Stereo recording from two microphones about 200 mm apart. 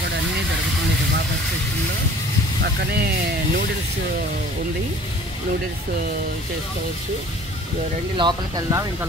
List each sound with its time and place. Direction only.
2.6 s speech: 55° right (ahead or behind)
8.2 s speech: 20° right (ahead or behind)